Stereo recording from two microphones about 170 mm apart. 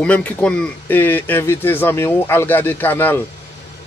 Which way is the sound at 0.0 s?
5° left (ahead or behind).